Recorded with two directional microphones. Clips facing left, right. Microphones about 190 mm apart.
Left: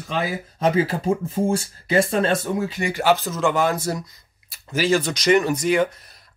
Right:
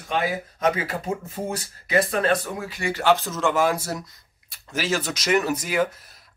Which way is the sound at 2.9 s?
5° left (ahead or behind).